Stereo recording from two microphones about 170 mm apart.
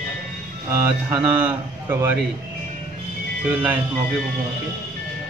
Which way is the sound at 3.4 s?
10° right (ahead or behind).